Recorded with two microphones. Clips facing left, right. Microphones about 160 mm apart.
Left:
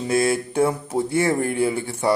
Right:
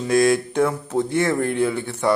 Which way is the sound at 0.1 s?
5° left (ahead or behind).